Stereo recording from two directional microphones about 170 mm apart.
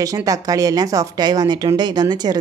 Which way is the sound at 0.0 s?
20° right (ahead or behind).